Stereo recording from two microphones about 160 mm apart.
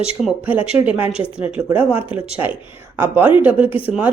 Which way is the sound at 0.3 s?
10° right (ahead or behind).